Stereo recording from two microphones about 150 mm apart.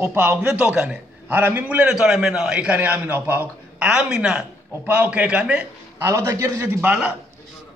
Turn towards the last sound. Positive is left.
turn(degrees=-15)  # may be behind; listen again after turning